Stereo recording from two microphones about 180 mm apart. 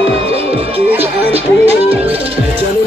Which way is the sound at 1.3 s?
35° right (ahead or behind).